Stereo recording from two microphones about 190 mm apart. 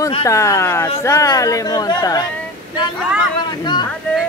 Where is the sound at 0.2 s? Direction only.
15° left (ahead or behind).